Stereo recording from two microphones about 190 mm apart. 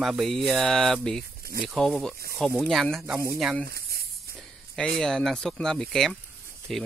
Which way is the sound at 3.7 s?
55° right (ahead or behind).